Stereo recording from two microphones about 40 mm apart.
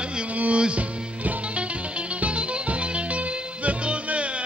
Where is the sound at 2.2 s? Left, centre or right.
Right.